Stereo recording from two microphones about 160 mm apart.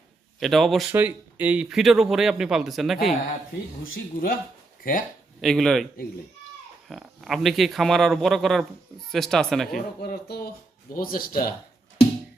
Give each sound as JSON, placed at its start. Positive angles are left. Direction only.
{"t": 0.3, "sound": "speech", "side_deg": 0}
{"t": 0.9, "sound": "speech", "side_deg": -10}
{"t": 3.9, "sound": "speech", "side_deg": 65}
{"t": 5.4, "sound": "speech", "side_deg": 0}
{"t": 10.0, "sound": "speech", "side_deg": 80}
{"t": 10.9, "sound": "speech", "side_deg": 60}